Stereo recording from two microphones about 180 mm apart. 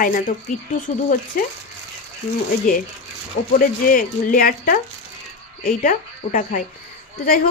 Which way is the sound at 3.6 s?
50° left (ahead or behind).